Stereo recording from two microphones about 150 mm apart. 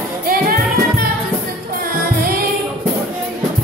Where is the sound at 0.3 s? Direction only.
70° right (ahead or behind).